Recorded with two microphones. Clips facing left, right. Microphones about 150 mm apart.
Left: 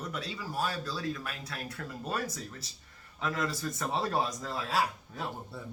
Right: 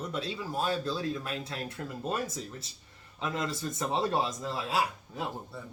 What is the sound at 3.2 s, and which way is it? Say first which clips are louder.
Speech: even; 20° right (ahead or behind).